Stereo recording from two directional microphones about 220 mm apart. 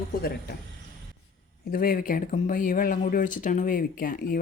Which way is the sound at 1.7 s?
40° left (ahead or behind).